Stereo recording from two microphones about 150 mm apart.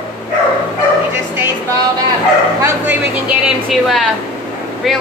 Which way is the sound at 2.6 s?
20° right (ahead or behind).